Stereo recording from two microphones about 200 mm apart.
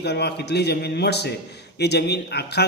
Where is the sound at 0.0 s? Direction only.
55° left (ahead or behind).